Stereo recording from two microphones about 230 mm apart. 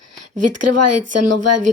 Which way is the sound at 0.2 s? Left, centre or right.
Right.